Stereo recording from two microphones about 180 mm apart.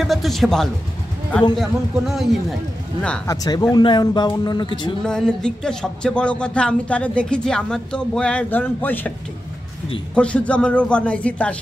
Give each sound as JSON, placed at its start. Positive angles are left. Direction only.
{"t": 0.0, "sound": "speech", "side_deg": 0}
{"t": 3.3, "sound": "a man's voice", "side_deg": 20}
{"t": 5.0, "sound": "speech", "side_deg": 5}
{"t": 10.1, "sound": "a man's voice", "side_deg": 5}